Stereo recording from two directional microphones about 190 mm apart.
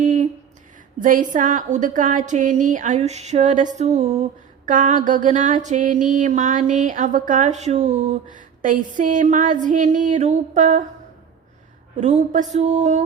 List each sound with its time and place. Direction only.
0.0 s a sound: 40° right (ahead or behind)
0.9 s a woman's voice: 45° right (ahead or behind)
11.9 s a woman's voice: 40° right (ahead or behind)